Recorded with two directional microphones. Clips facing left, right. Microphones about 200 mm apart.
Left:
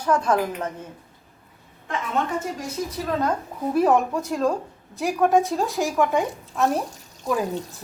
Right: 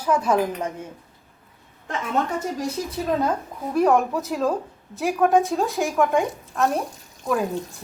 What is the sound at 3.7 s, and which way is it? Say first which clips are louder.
Speech: right 1 dB; centre (ahead or behind).